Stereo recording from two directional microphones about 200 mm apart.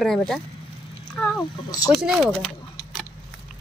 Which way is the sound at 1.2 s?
5° left (ahead or behind).